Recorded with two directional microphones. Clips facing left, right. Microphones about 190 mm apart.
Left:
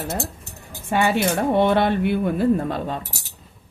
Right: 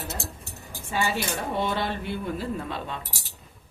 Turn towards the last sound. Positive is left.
turn(degrees=40)  # may be behind; listen again after turning